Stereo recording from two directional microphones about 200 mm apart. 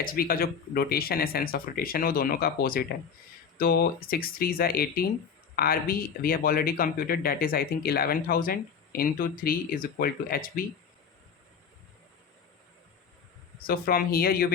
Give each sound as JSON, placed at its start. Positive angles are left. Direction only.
{"t": 0.0, "sound": "speech", "side_deg": 45}
{"t": 13.6, "sound": "speech", "side_deg": 45}